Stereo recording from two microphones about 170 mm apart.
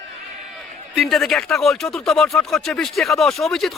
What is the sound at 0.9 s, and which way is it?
Speech, centre (ahead or behind).